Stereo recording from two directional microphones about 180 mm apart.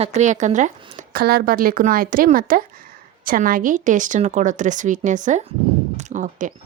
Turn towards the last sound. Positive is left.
turn(degrees=-45)  # may be behind; listen again after turning